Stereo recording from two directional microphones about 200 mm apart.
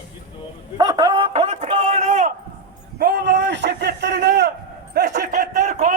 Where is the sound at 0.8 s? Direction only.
20° right (ahead or behind); by 2.3 s 40° right (ahead or behind).